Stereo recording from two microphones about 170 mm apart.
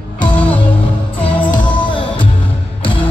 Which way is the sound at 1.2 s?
10° left (ahead or behind).